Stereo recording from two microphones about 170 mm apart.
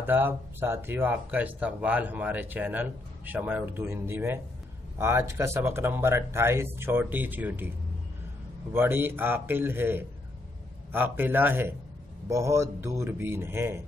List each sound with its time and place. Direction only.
0.0 s speech: 10° right (ahead or behind)
8.7 s speech: 10° right (ahead or behind)